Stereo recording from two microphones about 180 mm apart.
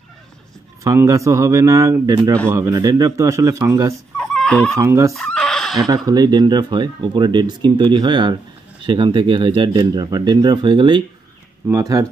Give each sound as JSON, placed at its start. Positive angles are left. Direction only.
{"t": 0.8, "sound": "speech", "side_deg": -20}
{"t": 4.3, "sound": "chicken", "side_deg": 5}
{"t": 4.7, "sound": "speech", "side_deg": -15}
{"t": 5.1, "sound": "chicken", "side_deg": 0}
{"t": 6.0, "sound": "speech", "side_deg": -20}